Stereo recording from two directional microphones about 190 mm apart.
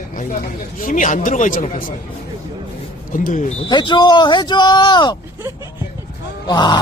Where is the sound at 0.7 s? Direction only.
45° left (ahead or behind).